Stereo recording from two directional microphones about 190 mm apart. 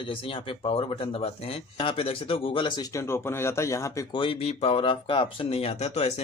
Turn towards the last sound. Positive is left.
turn(degrees=35)  # may be behind; listen again after turning